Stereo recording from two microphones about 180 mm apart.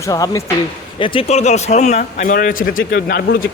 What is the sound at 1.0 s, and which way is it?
Speech, 30° left (ahead or behind).